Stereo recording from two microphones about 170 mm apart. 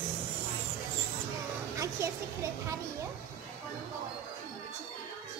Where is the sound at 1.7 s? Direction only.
15° right (ahead or behind).